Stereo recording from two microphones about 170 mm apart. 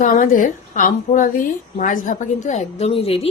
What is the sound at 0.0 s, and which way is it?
A woman's voice, 50° left (ahead or behind).